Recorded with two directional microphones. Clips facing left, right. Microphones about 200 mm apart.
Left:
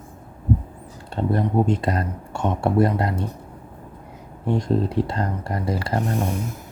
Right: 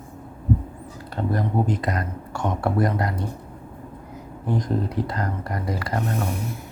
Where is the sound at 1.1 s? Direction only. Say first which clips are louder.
Left 3 dB; 25° left (ahead or behind).